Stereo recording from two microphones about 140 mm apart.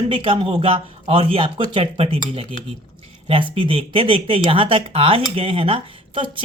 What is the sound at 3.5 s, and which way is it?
Speech, 40° right (ahead or behind).